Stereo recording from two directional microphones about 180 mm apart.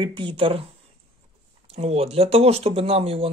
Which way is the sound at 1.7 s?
35° right (ahead or behind).